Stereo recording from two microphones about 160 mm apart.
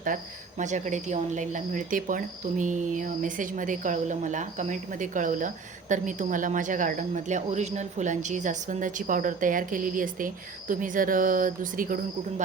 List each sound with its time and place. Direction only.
0.6 s speech: 50° right (ahead or behind)